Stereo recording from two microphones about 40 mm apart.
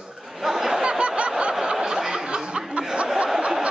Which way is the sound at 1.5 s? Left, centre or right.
Centre.